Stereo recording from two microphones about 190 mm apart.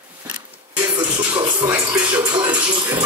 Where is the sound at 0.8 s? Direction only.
10° right (ahead or behind).